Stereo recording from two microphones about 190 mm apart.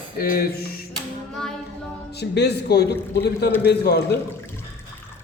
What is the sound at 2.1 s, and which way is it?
A man's voice, 60° left (ahead or behind).